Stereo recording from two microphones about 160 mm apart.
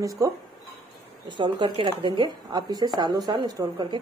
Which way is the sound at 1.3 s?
30° right (ahead or behind).